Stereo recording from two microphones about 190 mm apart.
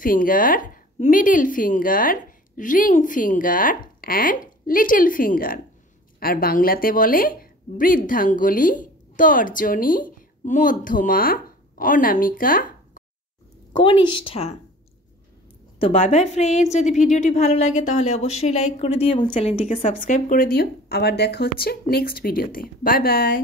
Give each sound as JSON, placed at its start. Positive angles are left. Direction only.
{"t": 0.0, "sound": "a woman's voice", "side_deg": 45}
{"t": 13.7, "sound": "speech", "side_deg": 25}
{"t": 15.8, "sound": "a woman's voice", "side_deg": 30}
{"t": 20.0, "sound": "a woman's voice", "side_deg": 40}